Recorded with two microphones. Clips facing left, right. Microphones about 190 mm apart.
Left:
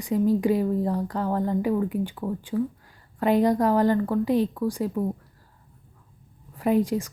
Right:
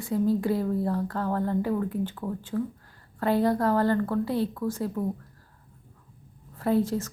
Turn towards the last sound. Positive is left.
turn(degrees=15)  # may be behind; listen again after turning